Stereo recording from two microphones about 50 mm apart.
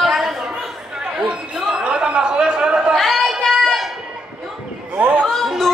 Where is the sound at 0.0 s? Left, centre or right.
Centre.